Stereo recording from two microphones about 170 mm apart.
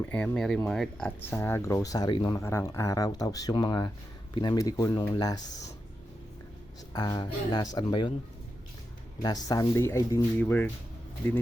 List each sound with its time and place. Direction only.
0.1 s speech: 5° left (ahead or behind); by 5.7 s 20° left (ahead or behind)
6.9 s speech: 25° left (ahead or behind)
9.2 s speech: 20° left (ahead or behind)